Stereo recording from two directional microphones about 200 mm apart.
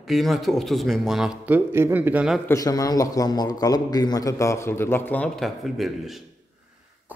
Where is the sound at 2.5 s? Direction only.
15° left (ahead or behind).